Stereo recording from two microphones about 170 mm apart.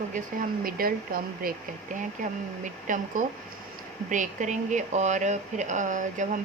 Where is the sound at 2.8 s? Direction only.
50° right (ahead or behind).